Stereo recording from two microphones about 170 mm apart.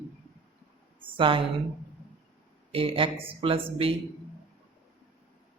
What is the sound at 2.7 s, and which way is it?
Speech, 30° right (ahead or behind).